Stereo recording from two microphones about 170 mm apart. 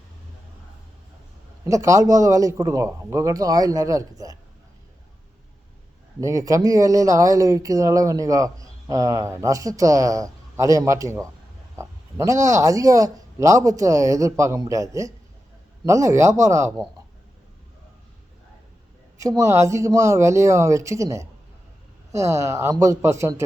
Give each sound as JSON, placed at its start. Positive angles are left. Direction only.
{"t": 1.6, "sound": "speech", "side_deg": -20}
{"t": 6.1, "sound": "speech", "side_deg": -20}
{"t": 19.2, "sound": "speech", "side_deg": -20}